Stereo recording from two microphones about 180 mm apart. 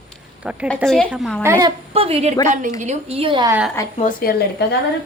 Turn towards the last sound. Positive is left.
turn(degrees=65)  # may be behind; listen again after turning